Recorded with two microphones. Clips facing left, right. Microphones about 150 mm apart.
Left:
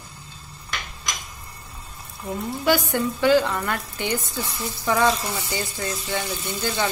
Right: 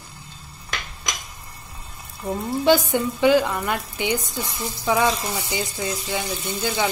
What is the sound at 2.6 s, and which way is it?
A woman's voice, 20° right (ahead or behind).